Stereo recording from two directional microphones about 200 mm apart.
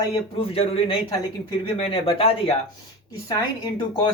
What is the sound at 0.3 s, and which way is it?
Speech, 30° left (ahead or behind).